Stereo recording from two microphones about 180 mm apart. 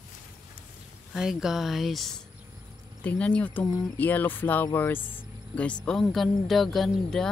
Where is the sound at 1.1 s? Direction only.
Centre (ahead or behind).